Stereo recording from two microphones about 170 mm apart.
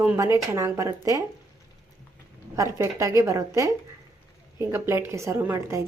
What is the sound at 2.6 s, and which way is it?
A woman's voice, 15° right (ahead or behind).